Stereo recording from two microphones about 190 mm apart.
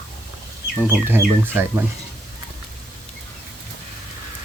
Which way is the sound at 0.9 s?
10° right (ahead or behind).